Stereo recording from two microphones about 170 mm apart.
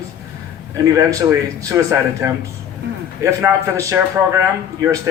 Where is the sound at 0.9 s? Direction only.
20° right (ahead or behind).